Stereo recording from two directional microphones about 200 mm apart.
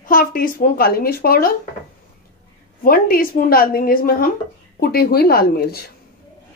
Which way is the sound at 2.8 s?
45° left (ahead or behind).